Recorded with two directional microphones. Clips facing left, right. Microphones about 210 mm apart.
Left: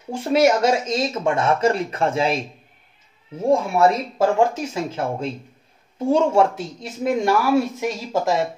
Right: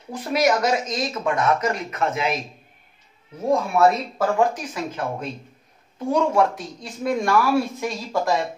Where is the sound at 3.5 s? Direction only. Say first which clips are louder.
Left 1 dB; 25° left (ahead or behind).